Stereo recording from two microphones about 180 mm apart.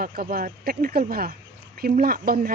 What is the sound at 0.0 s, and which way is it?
Speech, 55° right (ahead or behind).